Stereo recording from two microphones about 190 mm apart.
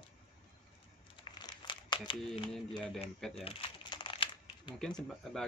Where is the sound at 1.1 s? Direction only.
25° left (ahead or behind).